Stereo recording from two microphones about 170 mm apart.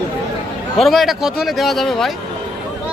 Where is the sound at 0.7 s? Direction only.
Centre (ahead or behind).